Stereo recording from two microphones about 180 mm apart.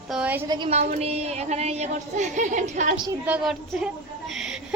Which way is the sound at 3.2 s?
5° right (ahead or behind).